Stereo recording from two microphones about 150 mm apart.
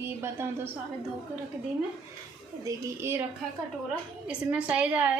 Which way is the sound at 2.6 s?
15° right (ahead or behind).